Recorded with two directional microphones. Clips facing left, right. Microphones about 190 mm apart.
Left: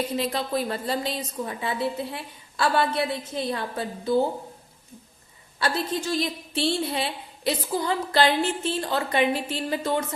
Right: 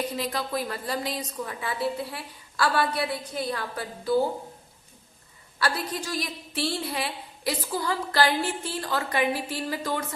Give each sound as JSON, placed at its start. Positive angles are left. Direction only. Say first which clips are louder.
{"t": 0.2, "sound": "a woman's voice", "louder": "left 3 dB", "side_deg": 25}
{"t": 5.5, "sound": "a woman's voice", "louder": "left 3 dB", "side_deg": 25}